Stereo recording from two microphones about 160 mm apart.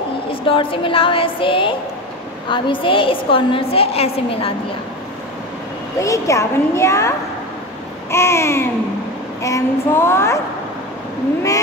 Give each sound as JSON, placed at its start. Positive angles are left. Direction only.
{"t": 0.3, "sound": "a woman's voice", "side_deg": 35}
{"t": 5.9, "sound": "a woman's voice", "side_deg": 20}
{"t": 8.1, "sound": "child singing", "side_deg": 15}